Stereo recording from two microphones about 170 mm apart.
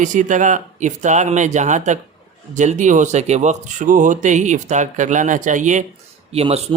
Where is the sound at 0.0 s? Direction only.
50° right (ahead or behind).